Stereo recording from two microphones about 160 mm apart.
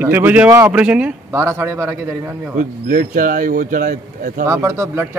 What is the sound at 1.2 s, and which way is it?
A man's voice, 15° right (ahead or behind).